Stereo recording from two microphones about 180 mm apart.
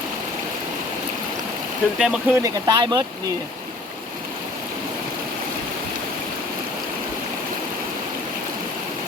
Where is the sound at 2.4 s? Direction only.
25° right (ahead or behind).